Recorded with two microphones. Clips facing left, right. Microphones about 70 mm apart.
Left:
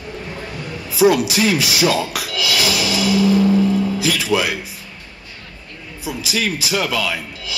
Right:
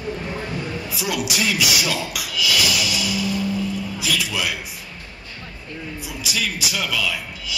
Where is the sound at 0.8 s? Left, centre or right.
Left.